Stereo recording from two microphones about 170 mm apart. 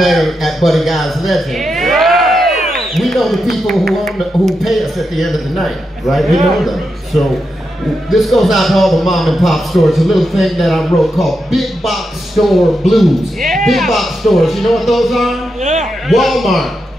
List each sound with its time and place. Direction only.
0.0 s a man's voice: centre (ahead or behind)
15.6 s a man's voice: 45° right (ahead or behind)
16.1 s a man's voice: centre (ahead or behind)